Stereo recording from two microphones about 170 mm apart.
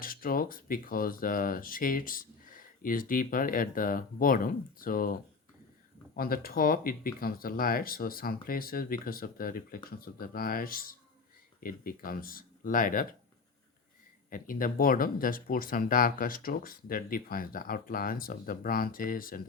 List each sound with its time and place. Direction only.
0.0 s speech: 55° left (ahead or behind)
6.1 s speech: 60° left (ahead or behind)
14.3 s speech: 55° left (ahead or behind)